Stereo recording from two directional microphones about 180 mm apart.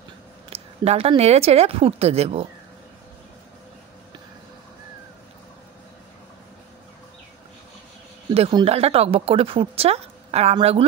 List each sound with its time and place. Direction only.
0.5 s speech: 35° right (ahead or behind)
8.4 s speech: 30° right (ahead or behind)